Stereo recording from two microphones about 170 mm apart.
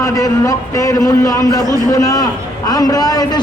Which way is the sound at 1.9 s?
20° left (ahead or behind).